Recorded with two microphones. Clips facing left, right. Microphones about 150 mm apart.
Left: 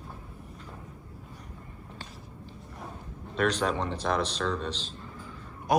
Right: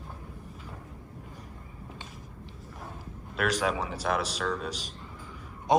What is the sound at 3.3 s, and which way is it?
Speech, 5° right (ahead or behind).